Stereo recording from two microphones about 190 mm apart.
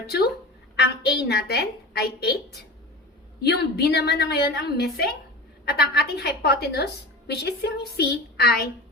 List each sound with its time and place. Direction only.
1.2 s a woman's voice: 55° left (ahead or behind)
3.4 s a woman's voice: 55° left (ahead or behind)